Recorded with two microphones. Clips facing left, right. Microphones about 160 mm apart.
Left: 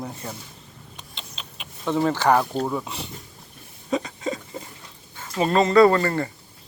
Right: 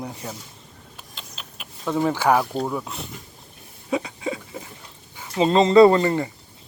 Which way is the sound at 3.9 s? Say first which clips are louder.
Even; 10° right (ahead or behind).